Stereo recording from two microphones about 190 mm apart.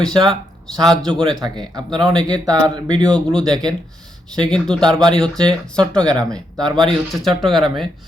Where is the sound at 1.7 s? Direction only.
20° right (ahead or behind).